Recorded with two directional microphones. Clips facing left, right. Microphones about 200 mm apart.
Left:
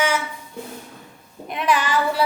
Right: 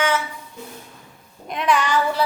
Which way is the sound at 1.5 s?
5° left (ahead or behind).